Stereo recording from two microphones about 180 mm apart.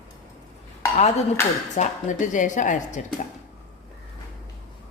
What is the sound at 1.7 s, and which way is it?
Speech, 45° left (ahead or behind).